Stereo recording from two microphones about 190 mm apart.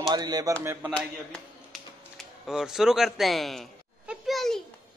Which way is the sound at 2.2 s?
5° right (ahead or behind).